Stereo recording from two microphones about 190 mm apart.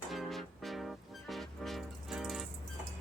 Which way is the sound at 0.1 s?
Centre (ahead or behind).